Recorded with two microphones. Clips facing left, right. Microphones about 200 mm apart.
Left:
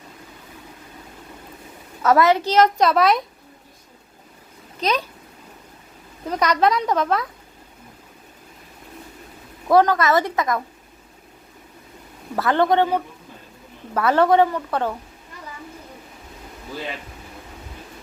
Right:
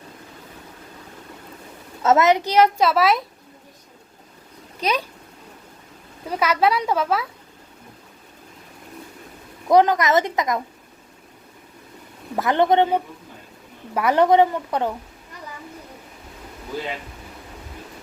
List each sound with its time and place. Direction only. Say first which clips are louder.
2.0 s a child's voice: even; 25° right (ahead or behind); by 3.2 s 5° right (ahead or behind)
4.8 s a child's voice: left 1 dB; 10° right (ahead or behind)
6.2 s a child's voice: left 1 dB; 10° right (ahead or behind)
9.6 s a woman's voice: even; 20° right (ahead or behind)
12.4 s a woman's voice: right 1 dB; 20° right (ahead or behind)